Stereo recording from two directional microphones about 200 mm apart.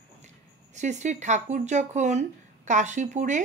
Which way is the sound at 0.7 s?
35° right (ahead or behind).